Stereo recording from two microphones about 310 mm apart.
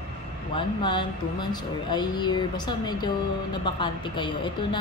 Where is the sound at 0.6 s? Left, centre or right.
Centre.